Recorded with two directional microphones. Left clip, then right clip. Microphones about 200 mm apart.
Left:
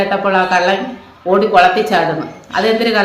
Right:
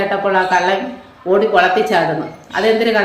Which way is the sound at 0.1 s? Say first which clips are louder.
Left 1 dB; 15° left (ahead or behind).